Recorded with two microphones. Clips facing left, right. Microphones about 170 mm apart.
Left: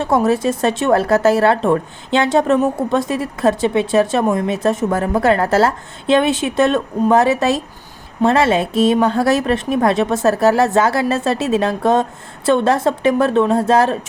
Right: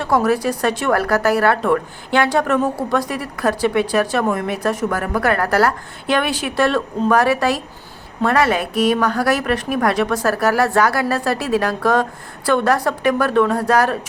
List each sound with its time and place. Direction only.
0.0 s a woman's voice: 25° left (ahead or behind)